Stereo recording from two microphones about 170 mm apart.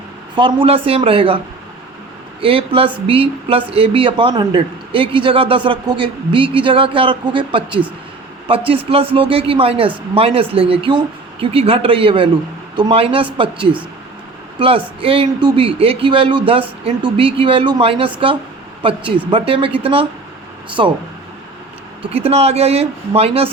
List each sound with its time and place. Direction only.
0.3 s speech: 30° right (ahead or behind)
2.4 s speech: 30° right (ahead or behind)
22.1 s speech: 35° right (ahead or behind)